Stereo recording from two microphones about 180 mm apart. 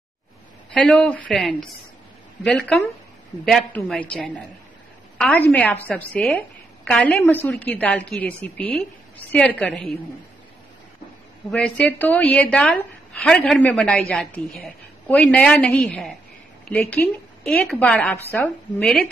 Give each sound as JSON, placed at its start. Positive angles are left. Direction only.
{"t": 0.7, "sound": "a woman's voice", "side_deg": 5}
{"t": 11.5, "sound": "a woman's voice", "side_deg": 5}
{"t": 17.5, "sound": "a woman's voice", "side_deg": 5}